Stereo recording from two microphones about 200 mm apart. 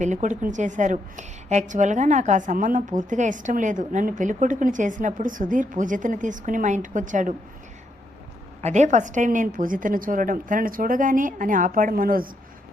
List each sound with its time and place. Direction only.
0.0 s a woman's voice: 35° right (ahead or behind)
8.6 s a woman's voice: 35° right (ahead or behind)